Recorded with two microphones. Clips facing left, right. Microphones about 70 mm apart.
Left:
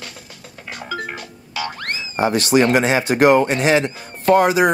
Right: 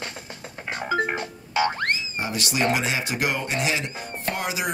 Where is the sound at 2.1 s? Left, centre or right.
Left.